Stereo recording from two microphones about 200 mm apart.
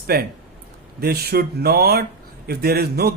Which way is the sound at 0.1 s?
50° right (ahead or behind).